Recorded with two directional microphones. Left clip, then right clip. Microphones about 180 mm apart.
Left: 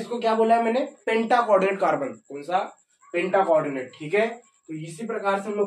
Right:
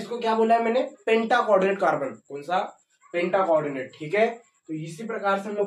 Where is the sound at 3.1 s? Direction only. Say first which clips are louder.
Left 1 dB; 5° left (ahead or behind).